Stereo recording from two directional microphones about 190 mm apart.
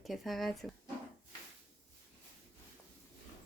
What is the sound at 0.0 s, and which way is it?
Speech, centre (ahead or behind).